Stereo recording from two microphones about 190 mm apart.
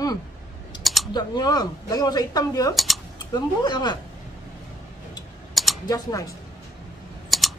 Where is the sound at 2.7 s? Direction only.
Centre (ahead or behind).